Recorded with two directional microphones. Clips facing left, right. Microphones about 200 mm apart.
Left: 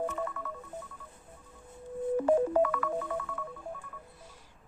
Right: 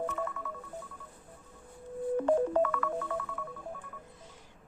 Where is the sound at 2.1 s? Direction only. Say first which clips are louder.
Left 1 dB; 5° left (ahead or behind).